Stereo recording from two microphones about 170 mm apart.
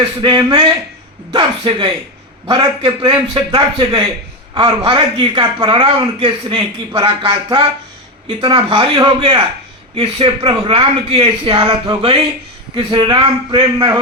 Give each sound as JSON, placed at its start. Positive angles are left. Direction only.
{"t": 0.2, "sound": "a man's voice", "side_deg": -25}